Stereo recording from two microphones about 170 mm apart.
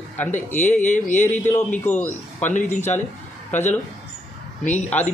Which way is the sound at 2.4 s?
45° left (ahead or behind).